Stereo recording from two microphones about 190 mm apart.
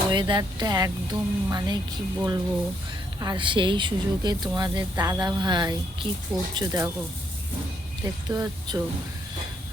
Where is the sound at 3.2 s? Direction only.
20° right (ahead or behind).